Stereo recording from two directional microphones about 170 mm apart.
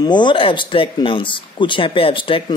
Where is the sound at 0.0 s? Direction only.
25° left (ahead or behind).